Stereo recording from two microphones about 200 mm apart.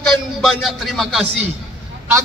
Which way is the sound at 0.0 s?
Centre (ahead or behind).